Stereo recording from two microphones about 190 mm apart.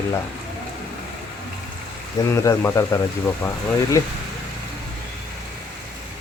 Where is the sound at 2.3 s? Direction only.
15° left (ahead or behind).